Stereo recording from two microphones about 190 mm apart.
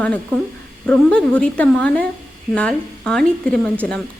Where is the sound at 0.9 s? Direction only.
5° left (ahead or behind).